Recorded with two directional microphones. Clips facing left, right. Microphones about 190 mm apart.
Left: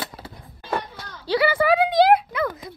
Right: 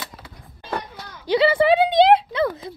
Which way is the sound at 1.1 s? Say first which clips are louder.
Right 3 dB; 15° right (ahead or behind).